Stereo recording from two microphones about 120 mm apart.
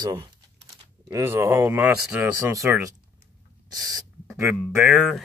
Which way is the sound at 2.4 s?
25° right (ahead or behind).